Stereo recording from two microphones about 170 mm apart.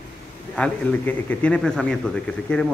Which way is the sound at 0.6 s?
10° left (ahead or behind).